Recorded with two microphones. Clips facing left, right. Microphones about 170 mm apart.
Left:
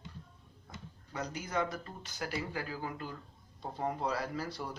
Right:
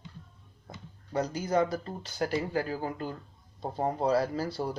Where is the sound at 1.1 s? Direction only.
35° right (ahead or behind).